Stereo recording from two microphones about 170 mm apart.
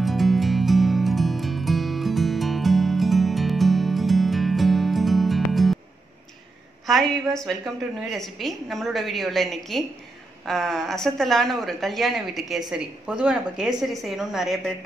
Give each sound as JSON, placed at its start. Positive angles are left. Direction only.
{"t": 0.0, "sound": "music", "side_deg": 0}
{"t": 6.9, "sound": "speech", "side_deg": 0}